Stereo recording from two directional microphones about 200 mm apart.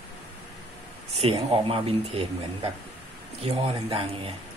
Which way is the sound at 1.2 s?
30° right (ahead or behind).